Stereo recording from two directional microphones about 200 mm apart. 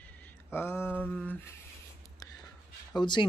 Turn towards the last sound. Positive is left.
turn(degrees=20)  # may be behind; listen again after turning